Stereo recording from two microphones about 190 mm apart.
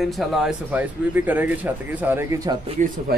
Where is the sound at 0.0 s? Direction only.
Centre (ahead or behind).